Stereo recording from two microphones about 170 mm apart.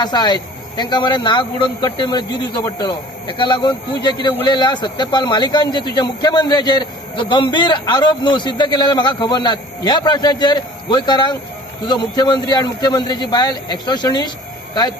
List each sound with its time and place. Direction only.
0.0 s speech: 25° left (ahead or behind)